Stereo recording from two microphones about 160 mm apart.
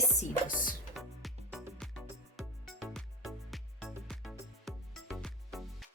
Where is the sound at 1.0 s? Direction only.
Centre (ahead or behind).